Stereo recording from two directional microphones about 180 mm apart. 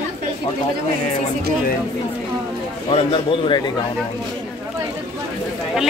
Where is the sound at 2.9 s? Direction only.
30° left (ahead or behind).